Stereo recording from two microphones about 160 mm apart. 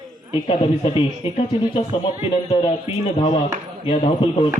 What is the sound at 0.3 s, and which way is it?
Speech, 30° left (ahead or behind).